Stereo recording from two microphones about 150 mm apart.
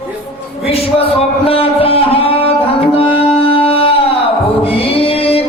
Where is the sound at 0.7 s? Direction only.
40° left (ahead or behind).